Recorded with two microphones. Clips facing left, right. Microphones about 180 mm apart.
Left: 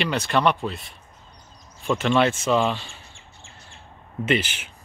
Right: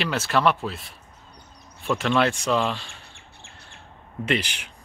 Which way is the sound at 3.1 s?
60° right (ahead or behind).